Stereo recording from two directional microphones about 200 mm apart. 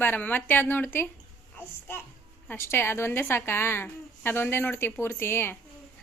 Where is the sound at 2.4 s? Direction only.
10° left (ahead or behind).